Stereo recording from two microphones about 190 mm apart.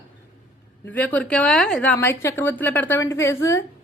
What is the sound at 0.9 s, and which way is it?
A woman's voice, 10° left (ahead or behind).